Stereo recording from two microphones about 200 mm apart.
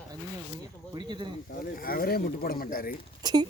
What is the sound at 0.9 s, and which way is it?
Speech, 25° right (ahead or behind).